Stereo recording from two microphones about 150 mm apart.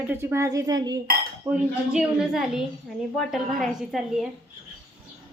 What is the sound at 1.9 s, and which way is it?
A woman's voice, 5° right (ahead or behind).